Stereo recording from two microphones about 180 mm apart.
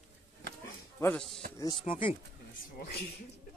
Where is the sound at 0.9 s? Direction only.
10° left (ahead or behind).